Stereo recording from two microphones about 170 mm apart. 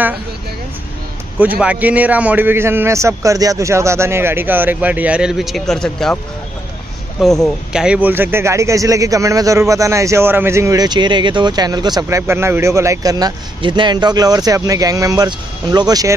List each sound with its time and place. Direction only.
1.6 s speech: 10° right (ahead or behind)
7.2 s speech: centre (ahead or behind); by 16.2 s 20° right (ahead or behind)